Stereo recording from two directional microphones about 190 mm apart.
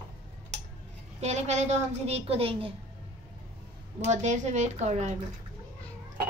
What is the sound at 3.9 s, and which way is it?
A woman's voice, 40° right (ahead or behind).